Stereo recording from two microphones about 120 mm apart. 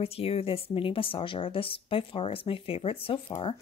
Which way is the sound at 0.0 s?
55° left (ahead or behind).